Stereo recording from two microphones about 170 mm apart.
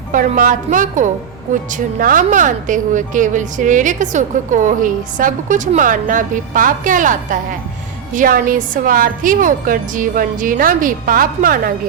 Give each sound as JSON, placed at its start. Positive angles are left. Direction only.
{"t": 0.1, "sound": "a woman's voice", "side_deg": -55}